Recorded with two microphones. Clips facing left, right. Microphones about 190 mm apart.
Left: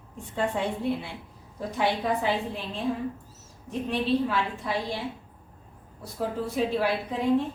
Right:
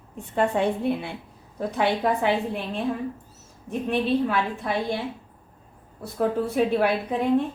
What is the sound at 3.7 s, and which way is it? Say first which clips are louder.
A woman's voice: right 3 dB; 55° right (ahead or behind).